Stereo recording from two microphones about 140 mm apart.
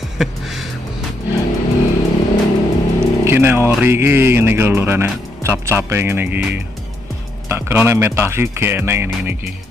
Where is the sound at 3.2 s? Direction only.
15° right (ahead or behind).